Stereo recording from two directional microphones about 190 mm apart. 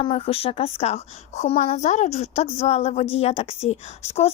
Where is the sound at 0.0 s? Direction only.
30° left (ahead or behind).